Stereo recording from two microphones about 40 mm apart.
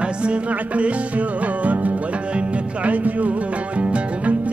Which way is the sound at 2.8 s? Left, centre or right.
Right.